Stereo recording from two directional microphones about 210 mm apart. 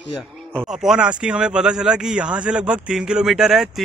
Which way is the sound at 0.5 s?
Centre (ahead or behind).